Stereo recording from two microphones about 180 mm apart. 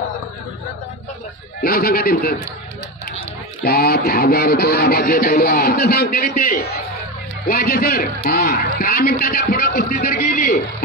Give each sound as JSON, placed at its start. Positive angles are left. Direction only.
{"t": 1.6, "sound": "speech", "side_deg": 55}
{"t": 3.6, "sound": "speech", "side_deg": 60}